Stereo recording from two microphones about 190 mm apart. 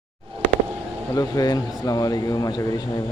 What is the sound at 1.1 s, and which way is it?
Speech, 20° left (ahead or behind).